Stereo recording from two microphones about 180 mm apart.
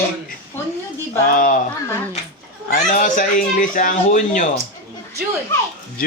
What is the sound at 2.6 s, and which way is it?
Speech, 50° left (ahead or behind).